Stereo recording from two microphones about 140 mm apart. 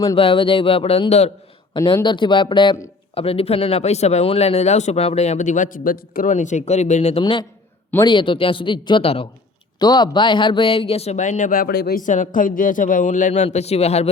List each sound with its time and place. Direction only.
0.2 s speech: 40° left (ahead or behind)
1.7 s speech: 35° left (ahead or behind); by 7.2 s 55° left (ahead or behind)
7.2 s speech: 35° left (ahead or behind)
9.7 s speech: 30° left (ahead or behind); by 14.1 s 50° left (ahead or behind)